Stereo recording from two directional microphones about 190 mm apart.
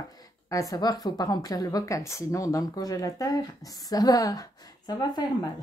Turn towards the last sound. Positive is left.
turn(degrees=20)  # may be behind; listen again after turning